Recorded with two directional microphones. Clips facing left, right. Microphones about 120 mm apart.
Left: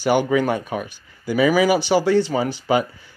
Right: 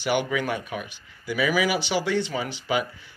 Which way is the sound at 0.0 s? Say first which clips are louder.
Left 7 dB; 40° left (ahead or behind).